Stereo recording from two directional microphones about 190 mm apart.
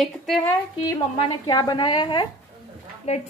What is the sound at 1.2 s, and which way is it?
A woman's voice, 25° left (ahead or behind).